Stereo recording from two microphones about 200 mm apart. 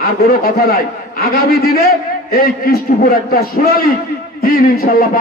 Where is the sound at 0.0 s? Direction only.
50° left (ahead or behind).